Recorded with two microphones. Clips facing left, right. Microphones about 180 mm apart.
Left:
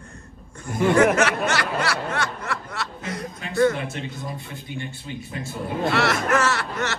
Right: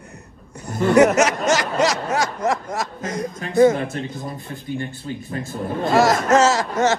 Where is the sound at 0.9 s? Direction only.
90° right.